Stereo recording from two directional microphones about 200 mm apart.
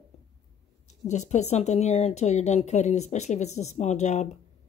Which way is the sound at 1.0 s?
35° left (ahead or behind).